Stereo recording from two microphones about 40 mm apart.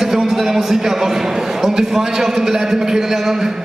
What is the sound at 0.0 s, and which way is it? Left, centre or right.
A man's voice, centre.